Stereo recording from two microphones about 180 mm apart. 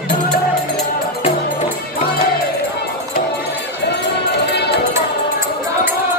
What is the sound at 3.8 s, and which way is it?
Music, 70° left (ahead or behind).